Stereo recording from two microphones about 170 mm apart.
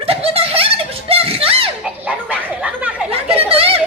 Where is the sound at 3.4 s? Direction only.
35° right (ahead or behind).